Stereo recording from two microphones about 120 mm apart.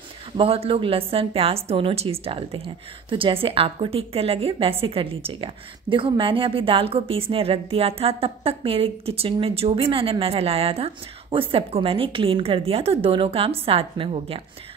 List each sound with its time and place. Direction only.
0.4 s a woman's voice: 50° right (ahead or behind)